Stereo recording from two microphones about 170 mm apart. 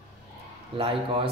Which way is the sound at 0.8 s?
35° right (ahead or behind).